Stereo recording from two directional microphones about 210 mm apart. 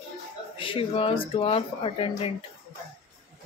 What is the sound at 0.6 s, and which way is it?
Speech, 25° left (ahead or behind).